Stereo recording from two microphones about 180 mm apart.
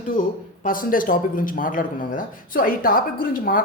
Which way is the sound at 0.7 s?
50° left (ahead or behind).